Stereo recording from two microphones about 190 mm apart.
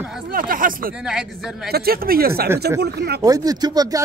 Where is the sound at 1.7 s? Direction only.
55° right (ahead or behind).